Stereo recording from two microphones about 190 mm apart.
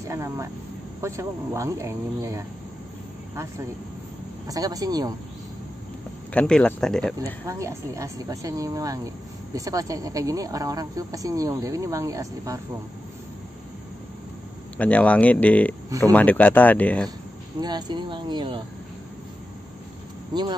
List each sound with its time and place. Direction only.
0.1 s speech: 15° right (ahead or behind)
4.5 s speech: 20° right (ahead or behind)
6.3 s speech: 5° left (ahead or behind)
7.4 s speech: 15° right (ahead or behind)
14.8 s speech: 5° left (ahead or behind)
17.6 s speech: 20° right (ahead or behind)
20.3 s speech: 20° right (ahead or behind)